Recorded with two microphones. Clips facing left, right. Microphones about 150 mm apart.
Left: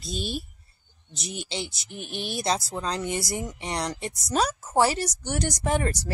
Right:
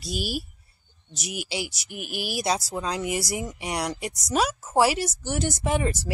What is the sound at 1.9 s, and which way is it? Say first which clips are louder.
Speech: right 1 dB; 5° right (ahead or behind).